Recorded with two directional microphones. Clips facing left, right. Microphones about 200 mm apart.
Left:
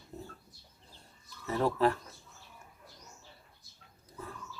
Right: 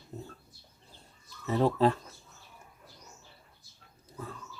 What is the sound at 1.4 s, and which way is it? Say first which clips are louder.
Speech: right 3 dB; 20° right (ahead or behind).